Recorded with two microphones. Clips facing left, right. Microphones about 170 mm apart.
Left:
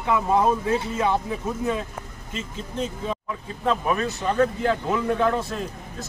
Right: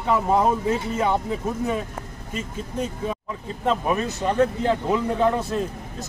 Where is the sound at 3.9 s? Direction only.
20° right (ahead or behind).